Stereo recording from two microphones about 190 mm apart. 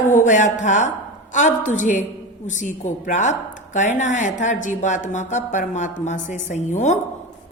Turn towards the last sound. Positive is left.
turn(degrees=40)  # may be behind; listen again after turning